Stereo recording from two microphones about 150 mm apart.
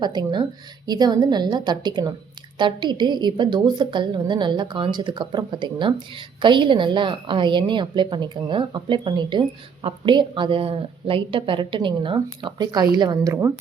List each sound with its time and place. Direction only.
0.0 s a woman's voice: 30° right (ahead or behind)